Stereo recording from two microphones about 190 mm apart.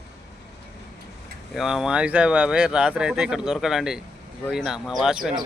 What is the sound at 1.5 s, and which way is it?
Speech, centre (ahead or behind).